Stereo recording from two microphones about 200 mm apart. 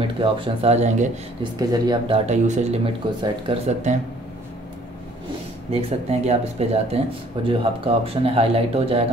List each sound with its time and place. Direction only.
0.2 s speech: 25° right (ahead or behind)
1.6 s speech: 20° right (ahead or behind)
5.7 s speech: 30° right (ahead or behind)